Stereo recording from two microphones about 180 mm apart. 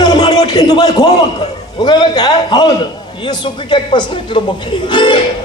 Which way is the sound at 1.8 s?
25° left (ahead or behind).